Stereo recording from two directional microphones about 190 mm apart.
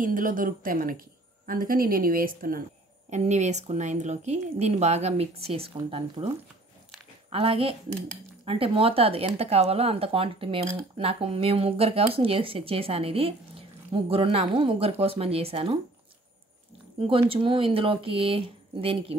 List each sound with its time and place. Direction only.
0.0 s speech: 45° right (ahead or behind)
3.1 s a woman's voice: 35° right (ahead or behind)
17.1 s speech: 30° right (ahead or behind)